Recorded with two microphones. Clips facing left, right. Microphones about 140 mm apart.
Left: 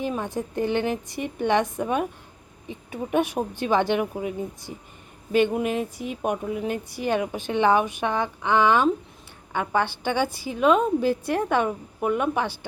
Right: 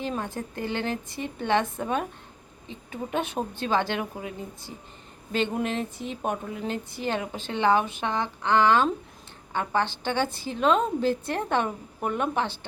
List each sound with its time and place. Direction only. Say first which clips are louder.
0.0 s speech: left 3 dB; 15° left (ahead or behind)